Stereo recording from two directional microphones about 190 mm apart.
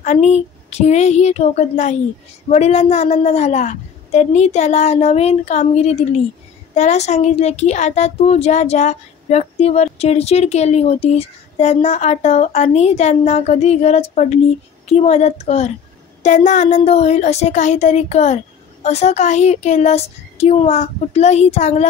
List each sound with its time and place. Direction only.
0.0 s a child's voice: 35° left (ahead or behind)